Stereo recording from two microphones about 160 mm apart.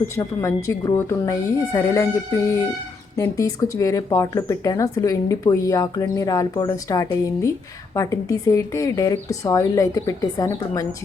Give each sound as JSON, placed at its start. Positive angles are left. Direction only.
{"t": 0.2, "sound": "speech", "side_deg": 20}